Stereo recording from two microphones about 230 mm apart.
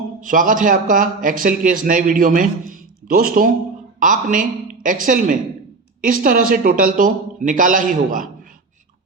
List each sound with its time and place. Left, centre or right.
0.2 s a man's voice: right